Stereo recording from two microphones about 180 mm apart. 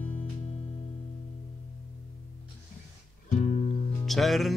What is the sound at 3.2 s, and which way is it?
Music, 40° left (ahead or behind).